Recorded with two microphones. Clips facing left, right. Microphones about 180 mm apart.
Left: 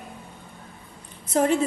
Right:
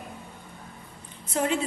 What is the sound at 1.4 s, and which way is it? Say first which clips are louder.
Speech: left 6 dB; 40° left (ahead or behind).